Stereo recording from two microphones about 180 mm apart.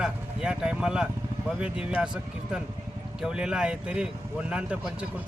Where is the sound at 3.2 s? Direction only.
5° right (ahead or behind).